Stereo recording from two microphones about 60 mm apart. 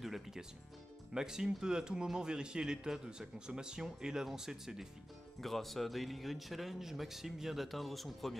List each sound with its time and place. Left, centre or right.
0.0 s a man's voice: centre